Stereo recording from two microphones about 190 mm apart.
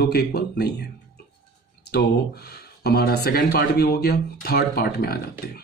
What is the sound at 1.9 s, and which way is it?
Speech, 60° left (ahead or behind).